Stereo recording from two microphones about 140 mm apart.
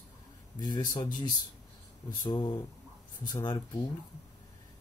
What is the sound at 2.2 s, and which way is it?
Speech, 30° left (ahead or behind).